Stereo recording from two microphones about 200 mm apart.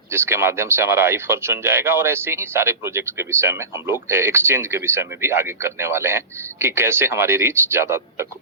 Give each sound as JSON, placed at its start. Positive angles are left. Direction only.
{"t": 0.1, "sound": "speech", "side_deg": -10}